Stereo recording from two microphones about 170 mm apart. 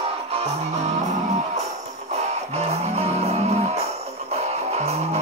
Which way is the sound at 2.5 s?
40° right (ahead or behind).